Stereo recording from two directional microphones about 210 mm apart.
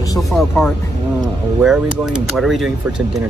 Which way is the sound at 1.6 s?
5° right (ahead or behind).